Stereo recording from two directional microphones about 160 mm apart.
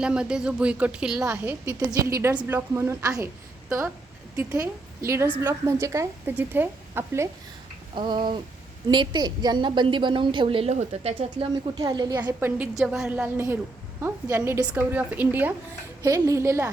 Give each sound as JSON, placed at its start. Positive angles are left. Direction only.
{"t": 0.0, "sound": "a woman's voice", "side_deg": -5}
{"t": 4.6, "sound": "a woman's voice", "side_deg": -15}
{"t": 7.9, "sound": "a woman's voice", "side_deg": -30}
{"t": 11.8, "sound": "a woman's voice", "side_deg": -25}
{"t": 12.2, "sound": "a woman's voice", "side_deg": -10}